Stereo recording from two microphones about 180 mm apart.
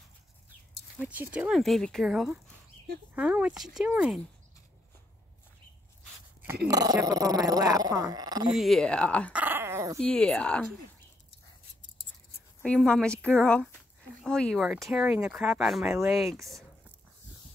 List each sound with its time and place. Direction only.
0.9 s speech: 10° right (ahead or behind)
6.7 s speech: 20° right (ahead or behind)
8.5 s speech: centre (ahead or behind)
9.3 s dog: 10° right (ahead or behind)
9.9 s speech: 5° left (ahead or behind)
12.6 s speech: 5° left (ahead or behind)